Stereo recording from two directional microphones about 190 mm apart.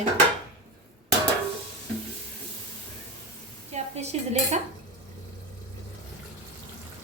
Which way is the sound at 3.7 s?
35° right (ahead or behind).